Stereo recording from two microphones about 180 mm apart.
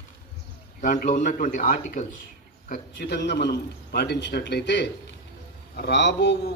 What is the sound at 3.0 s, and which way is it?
A man's voice, 70° left (ahead or behind).